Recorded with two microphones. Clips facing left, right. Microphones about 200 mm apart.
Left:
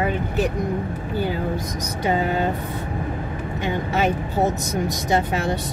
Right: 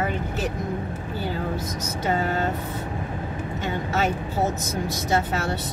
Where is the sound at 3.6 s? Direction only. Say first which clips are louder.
Left 3 dB; 15° left (ahead or behind).